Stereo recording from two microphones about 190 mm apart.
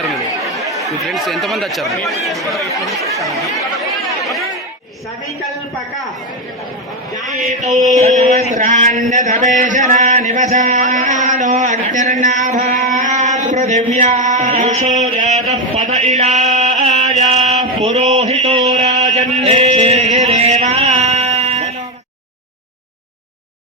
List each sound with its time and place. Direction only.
0.7 s speech: centre (ahead or behind)
7.2 s a sound: 40° right (ahead or behind)
19.4 s music: 35° right (ahead or behind)